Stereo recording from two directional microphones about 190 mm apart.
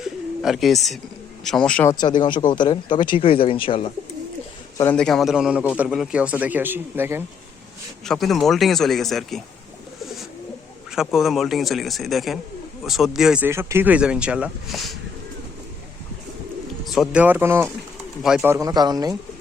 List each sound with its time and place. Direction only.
0.0 s bird: centre (ahead or behind)
1.5 s speech: 5° left (ahead or behind)
1.9 s speech: 20° left (ahead or behind)
4.8 s a man's voice: 5° left (ahead or behind); by 7.3 s 10° right (ahead or behind)
8.0 s speech: centre (ahead or behind)
10.9 s speech: centre (ahead or behind)
16.8 s a man's voice: centre (ahead or behind)
18.5 s speech: 20° right (ahead or behind)